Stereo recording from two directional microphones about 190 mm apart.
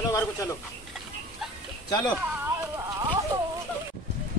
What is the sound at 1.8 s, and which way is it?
Speech, 20° left (ahead or behind).